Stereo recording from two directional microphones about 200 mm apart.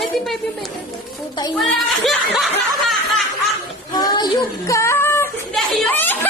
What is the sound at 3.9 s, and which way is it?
Child singing, 20° left (ahead or behind).